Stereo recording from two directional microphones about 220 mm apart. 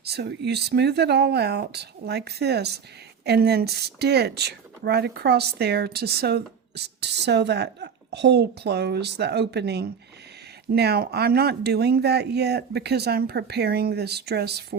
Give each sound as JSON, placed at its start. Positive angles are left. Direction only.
{"t": 0.0, "sound": "speech", "side_deg": -50}